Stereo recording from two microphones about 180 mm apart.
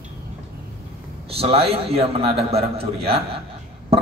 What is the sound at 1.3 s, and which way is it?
A man's voice, 35° right (ahead or behind).